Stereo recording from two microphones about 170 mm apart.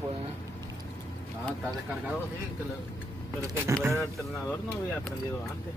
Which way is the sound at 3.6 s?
15° right (ahead or behind).